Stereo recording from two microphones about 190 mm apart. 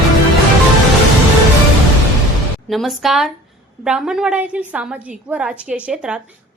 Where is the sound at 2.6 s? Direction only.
Centre (ahead or behind).